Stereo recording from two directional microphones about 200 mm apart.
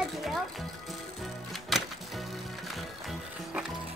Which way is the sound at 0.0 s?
Centre (ahead or behind).